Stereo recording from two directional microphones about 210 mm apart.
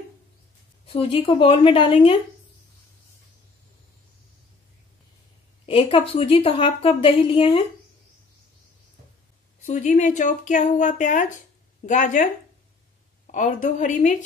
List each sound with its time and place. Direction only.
0.8 s a woman's voice: 25° left (ahead or behind)
5.7 s a woman's voice: 25° left (ahead or behind)
9.7 s speech: 35° left (ahead or behind)
13.3 s speech: 35° left (ahead or behind)